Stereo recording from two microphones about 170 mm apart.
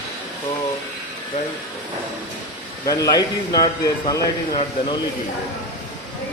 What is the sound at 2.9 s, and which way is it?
Speech, 20° left (ahead or behind).